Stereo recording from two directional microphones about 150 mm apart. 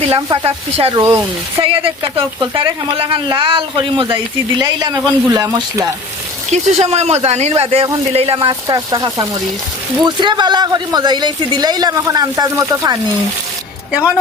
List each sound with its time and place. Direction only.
0.4 s a woman's voice: 40° right (ahead or behind)
1.0 s speech: 15° right (ahead or behind)
1.6 s a woman's voice: 35° right (ahead or behind)
6.5 s a woman's voice: 45° right (ahead or behind)
8.4 s speech: 25° right (ahead or behind)